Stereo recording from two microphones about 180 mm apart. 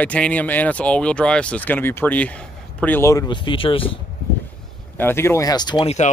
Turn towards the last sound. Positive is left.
turn(degrees=35)  # may be behind; listen again after turning